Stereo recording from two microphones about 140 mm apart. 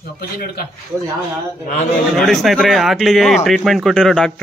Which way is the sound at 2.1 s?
Centre (ahead or behind).